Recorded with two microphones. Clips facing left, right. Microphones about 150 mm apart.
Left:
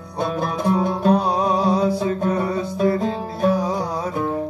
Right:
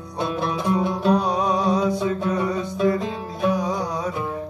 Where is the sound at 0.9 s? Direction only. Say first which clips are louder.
Left 2 dB; 35° left (ahead or behind).